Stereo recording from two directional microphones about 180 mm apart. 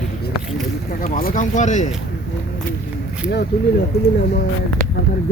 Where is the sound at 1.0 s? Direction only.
50° left (ahead or behind).